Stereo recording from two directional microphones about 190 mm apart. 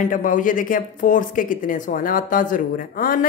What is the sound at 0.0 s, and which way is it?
A woman's voice, 45° left (ahead or behind).